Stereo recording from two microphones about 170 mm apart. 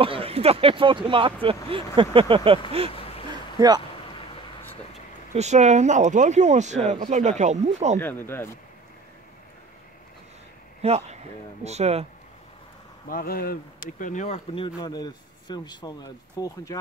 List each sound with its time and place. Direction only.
0.0 s speech: 35° right (ahead or behind)
3.3 s a sound: 25° right (ahead or behind)
5.3 s speech: 40° right (ahead or behind)
8.0 s speech: 10° left (ahead or behind)
10.8 s speech: 40° right (ahead or behind)
13.1 s speech: 60° left (ahead or behind); by 16.7 s 20° left (ahead or behind)